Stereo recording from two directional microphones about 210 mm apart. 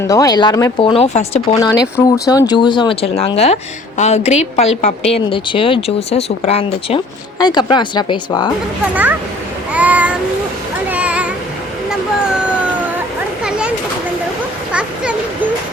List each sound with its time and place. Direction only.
0.0 s speech: 15° left (ahead or behind)
1.5 s speech: 15° left (ahead or behind)
9.7 s a sound: 5° right (ahead or behind)
13.4 s children playing: 5° right (ahead or behind)